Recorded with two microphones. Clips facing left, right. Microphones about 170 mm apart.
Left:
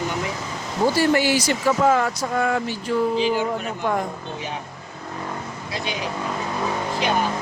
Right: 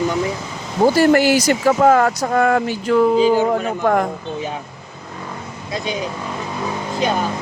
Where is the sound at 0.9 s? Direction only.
45° right (ahead or behind); by 3.0 s 75° right (ahead or behind).